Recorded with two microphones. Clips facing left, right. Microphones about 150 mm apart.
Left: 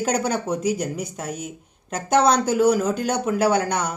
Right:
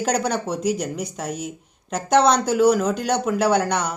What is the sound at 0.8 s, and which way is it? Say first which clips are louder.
Speech: even; 5° left (ahead or behind).